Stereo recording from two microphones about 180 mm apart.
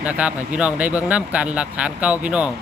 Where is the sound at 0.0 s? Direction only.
5° right (ahead or behind).